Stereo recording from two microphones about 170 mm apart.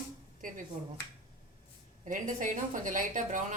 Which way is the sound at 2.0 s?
50° right (ahead or behind).